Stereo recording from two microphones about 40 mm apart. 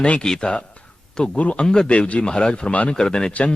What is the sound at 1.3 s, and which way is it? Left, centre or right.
Speech, left.